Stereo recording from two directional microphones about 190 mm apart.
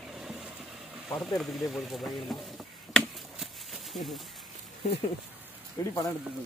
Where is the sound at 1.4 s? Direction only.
Centre (ahead or behind).